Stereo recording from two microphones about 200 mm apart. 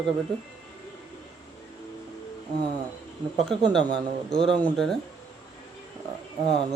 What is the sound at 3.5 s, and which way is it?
Speech, 5° left (ahead or behind).